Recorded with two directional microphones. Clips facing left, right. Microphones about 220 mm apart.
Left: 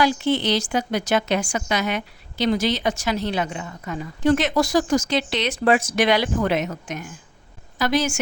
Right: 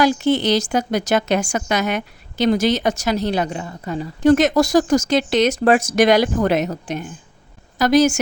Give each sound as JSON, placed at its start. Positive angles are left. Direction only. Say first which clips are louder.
{"t": 0.0, "sound": "a woman's voice", "louder": "right 4 dB", "side_deg": -45}
{"t": 4.2, "sound": "a woman's voice", "louder": "right 5 dB", "side_deg": -45}